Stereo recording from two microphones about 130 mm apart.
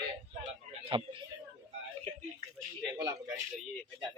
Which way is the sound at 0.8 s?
45° right (ahead or behind).